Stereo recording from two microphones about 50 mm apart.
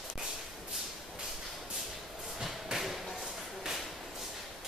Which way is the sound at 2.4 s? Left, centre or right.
Centre.